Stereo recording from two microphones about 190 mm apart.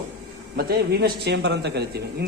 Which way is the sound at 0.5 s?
55° right (ahead or behind).